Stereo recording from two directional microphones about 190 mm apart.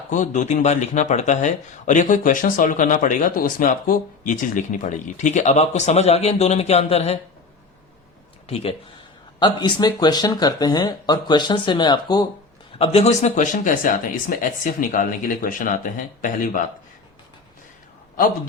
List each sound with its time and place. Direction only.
0.1 s speech: 40° left (ahead or behind)
8.4 s speech: 30° left (ahead or behind)
12.8 s speech: 30° left (ahead or behind)